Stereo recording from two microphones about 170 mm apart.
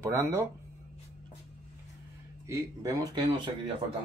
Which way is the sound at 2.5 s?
20° right (ahead or behind).